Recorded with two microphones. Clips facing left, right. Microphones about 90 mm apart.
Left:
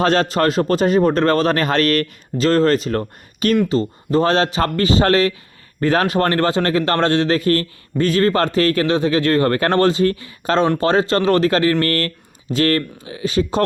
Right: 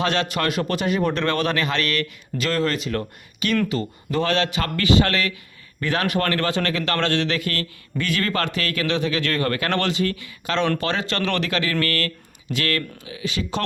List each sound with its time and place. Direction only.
0.0 s a man's voice: 40° left (ahead or behind)